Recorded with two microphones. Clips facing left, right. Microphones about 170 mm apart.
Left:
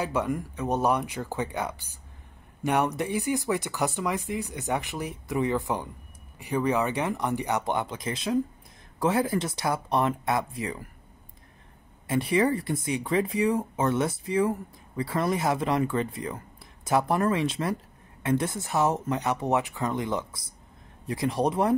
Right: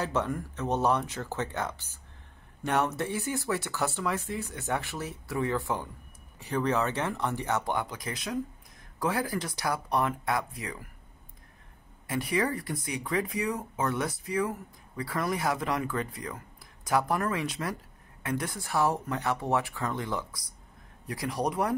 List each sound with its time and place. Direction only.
0.0 s speech: 10° left (ahead or behind); by 10.8 s 25° left (ahead or behind)
12.1 s speech: 25° left (ahead or behind)